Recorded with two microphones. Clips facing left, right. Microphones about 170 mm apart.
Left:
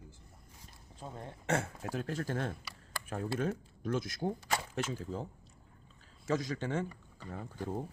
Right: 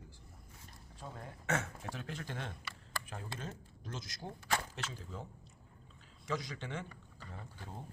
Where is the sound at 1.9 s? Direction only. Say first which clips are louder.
Left 10 dB; 45° left (ahead or behind).